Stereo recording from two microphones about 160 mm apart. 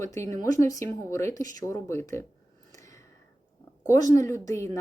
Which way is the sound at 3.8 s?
20° left (ahead or behind).